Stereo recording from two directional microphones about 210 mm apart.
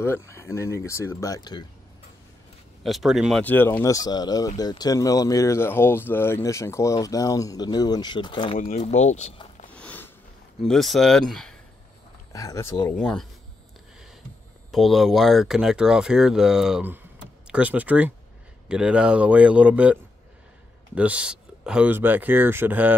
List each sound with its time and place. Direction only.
0.0 s speech: 10° left (ahead or behind)
2.8 s speech: centre (ahead or behind); by 8.5 s 20° left (ahead or behind)
8.5 s speech: 35° left (ahead or behind)
9.7 s a sound: 5° left (ahead or behind)
10.6 s speech: centre (ahead or behind)
12.3 s speech: 15° left (ahead or behind)
12.9 s speech: 5° left (ahead or behind)
14.7 s speech: centre (ahead or behind)